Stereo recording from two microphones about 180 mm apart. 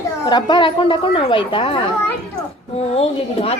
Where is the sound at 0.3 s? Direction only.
25° left (ahead or behind).